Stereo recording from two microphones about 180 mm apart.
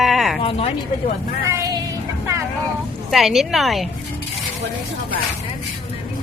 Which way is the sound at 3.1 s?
Centre (ahead or behind).